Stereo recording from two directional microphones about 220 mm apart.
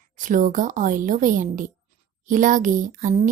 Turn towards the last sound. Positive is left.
turn(degrees=-35)  # may be behind; listen again after turning